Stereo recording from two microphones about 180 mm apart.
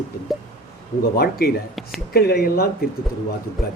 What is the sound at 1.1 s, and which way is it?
A man's voice, 60° left (ahead or behind).